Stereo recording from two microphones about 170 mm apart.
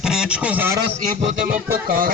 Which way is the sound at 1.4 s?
55° right (ahead or behind).